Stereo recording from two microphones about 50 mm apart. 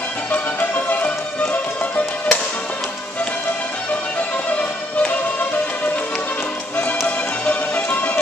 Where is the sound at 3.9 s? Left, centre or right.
Left.